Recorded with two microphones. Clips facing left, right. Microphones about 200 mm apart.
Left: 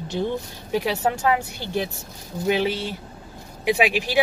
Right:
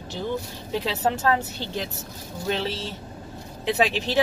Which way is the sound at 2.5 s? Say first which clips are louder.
Left 5 dB; 10° left (ahead or behind).